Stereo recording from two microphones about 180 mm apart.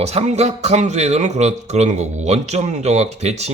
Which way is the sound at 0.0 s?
35° right (ahead or behind).